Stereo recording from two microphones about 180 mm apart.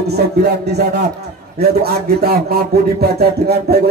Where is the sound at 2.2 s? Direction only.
60° right (ahead or behind).